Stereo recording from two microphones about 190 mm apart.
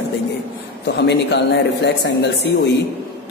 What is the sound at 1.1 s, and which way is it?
A woman's voice, 65° left (ahead or behind).